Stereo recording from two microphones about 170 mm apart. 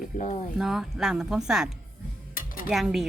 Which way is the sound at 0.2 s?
45° left (ahead or behind).